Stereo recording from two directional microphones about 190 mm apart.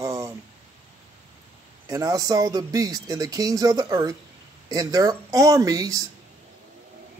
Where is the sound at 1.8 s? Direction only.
20° right (ahead or behind).